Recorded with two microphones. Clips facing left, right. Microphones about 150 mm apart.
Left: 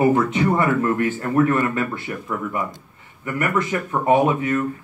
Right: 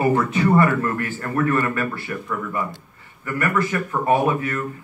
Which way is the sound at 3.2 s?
20° left (ahead or behind).